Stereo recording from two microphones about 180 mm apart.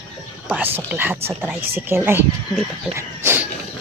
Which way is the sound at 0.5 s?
10° right (ahead or behind).